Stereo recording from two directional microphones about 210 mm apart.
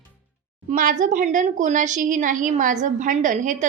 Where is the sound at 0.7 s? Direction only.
40° right (ahead or behind).